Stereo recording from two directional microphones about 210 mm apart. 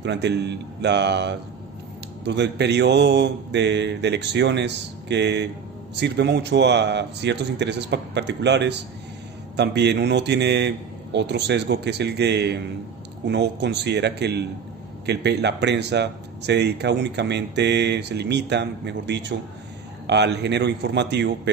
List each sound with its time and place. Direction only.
0.0 s speech: 55° right (ahead or behind)